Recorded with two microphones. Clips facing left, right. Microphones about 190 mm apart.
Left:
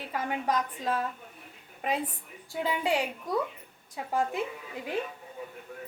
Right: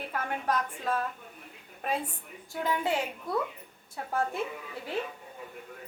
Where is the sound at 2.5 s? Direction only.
15° left (ahead or behind).